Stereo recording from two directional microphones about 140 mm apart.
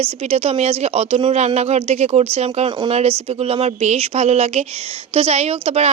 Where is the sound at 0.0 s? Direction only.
45° right (ahead or behind).